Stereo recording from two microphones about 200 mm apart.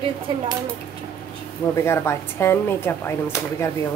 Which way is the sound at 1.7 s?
15° left (ahead or behind).